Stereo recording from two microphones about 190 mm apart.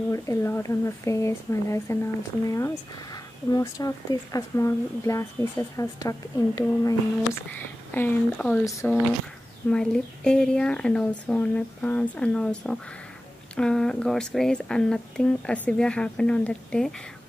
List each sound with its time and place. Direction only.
0.1 s speech: 15° left (ahead or behind)